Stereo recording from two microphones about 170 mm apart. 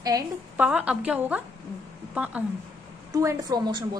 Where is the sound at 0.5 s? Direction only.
5° right (ahead or behind).